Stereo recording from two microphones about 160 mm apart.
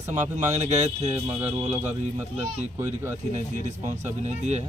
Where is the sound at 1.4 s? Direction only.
15° right (ahead or behind).